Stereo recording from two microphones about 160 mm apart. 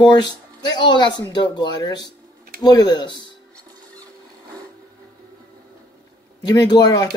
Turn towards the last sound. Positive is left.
turn(degrees=25)  # may be behind; listen again after turning